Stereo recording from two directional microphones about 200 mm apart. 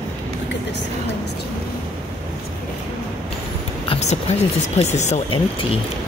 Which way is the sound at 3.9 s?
35° left (ahead or behind).